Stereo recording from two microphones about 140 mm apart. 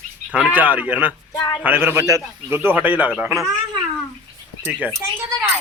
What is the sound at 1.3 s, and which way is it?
Speech, 20° left (ahead or behind).